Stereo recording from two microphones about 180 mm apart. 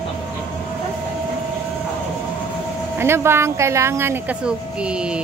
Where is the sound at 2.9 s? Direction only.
15° right (ahead or behind).